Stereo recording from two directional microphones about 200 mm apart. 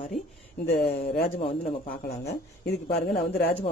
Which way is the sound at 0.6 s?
50° left (ahead or behind).